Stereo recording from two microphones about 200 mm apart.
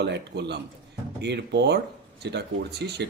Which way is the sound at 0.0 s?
60° right (ahead or behind).